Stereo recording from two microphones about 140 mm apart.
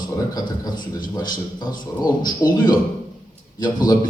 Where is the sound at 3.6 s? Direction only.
30° left (ahead or behind).